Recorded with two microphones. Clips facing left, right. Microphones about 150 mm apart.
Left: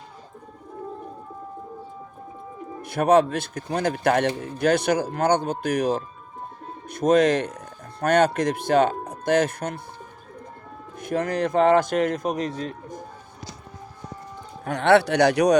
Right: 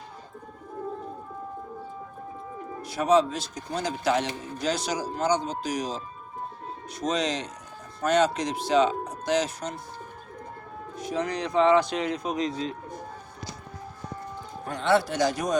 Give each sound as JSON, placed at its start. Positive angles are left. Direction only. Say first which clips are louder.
{"t": 2.8, "sound": "speech", "louder": "left 4 dB", "side_deg": 55}
{"t": 10.9, "sound": "a man's voice", "louder": "left 4 dB", "side_deg": 55}
{"t": 14.6, "sound": "speech", "louder": "left 6 dB", "side_deg": 70}